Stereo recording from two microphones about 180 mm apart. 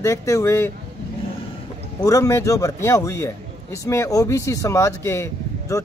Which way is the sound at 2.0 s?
15° left (ahead or behind).